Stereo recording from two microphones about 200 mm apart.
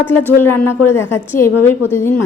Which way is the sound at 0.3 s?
10° left (ahead or behind).